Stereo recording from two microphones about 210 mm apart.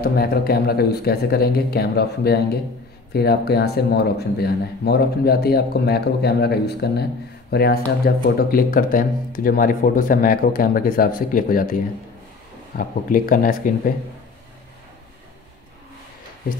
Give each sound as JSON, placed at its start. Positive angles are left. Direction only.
{"t": 0.0, "sound": "speech", "side_deg": 45}
{"t": 12.7, "sound": "speech", "side_deg": 40}